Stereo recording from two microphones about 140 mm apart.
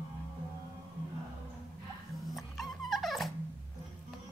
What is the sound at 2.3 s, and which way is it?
Dog, centre (ahead or behind).